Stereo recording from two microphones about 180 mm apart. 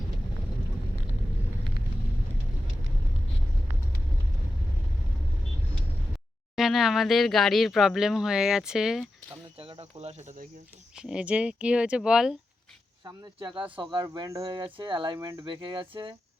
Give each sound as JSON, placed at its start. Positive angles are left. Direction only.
{"t": 6.6, "sound": "speech", "side_deg": 0}
{"t": 9.6, "sound": "speech", "side_deg": -30}
{"t": 10.9, "sound": "speech", "side_deg": -5}
{"t": 13.5, "sound": "speech", "side_deg": -10}
{"t": 13.9, "sound": "speech", "side_deg": -25}